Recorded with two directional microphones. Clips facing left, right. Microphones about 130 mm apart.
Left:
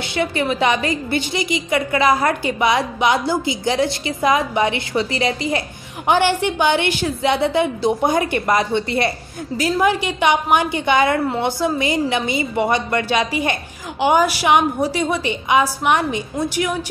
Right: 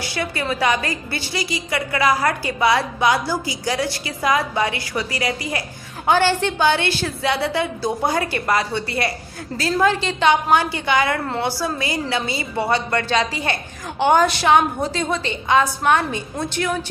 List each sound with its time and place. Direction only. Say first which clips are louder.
0.0 s a woman's voice: left 4 dB; 20° left (ahead or behind)